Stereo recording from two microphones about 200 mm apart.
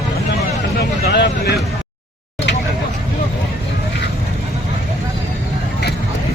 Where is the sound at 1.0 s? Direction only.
55° left (ahead or behind).